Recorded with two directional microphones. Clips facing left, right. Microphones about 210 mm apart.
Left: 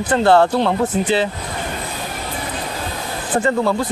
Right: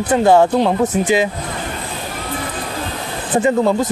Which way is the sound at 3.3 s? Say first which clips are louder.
Right 3 dB; 20° right (ahead or behind).